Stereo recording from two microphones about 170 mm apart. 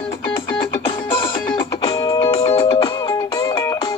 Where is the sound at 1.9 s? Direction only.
25° left (ahead or behind).